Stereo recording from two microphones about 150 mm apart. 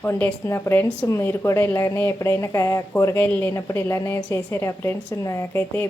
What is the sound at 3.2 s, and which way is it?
A woman's voice, 10° left (ahead or behind).